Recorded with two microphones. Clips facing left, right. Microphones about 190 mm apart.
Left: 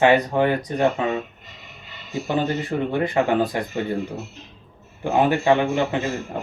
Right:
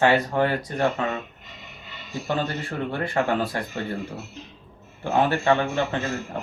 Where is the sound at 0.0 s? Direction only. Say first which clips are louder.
Left 3 dB; 20° left (ahead or behind).